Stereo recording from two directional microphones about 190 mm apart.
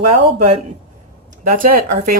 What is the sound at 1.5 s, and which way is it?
Speech, 45° right (ahead or behind).